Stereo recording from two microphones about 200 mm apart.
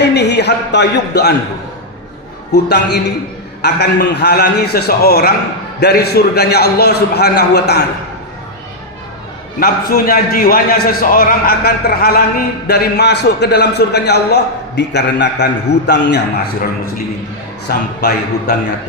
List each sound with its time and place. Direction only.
0.0 s a man's voice: 60° left (ahead or behind)
2.5 s a man's voice: 55° left (ahead or behind)
9.6 s a man's voice: 45° left (ahead or behind)
17.7 s a man's voice: 55° left (ahead or behind)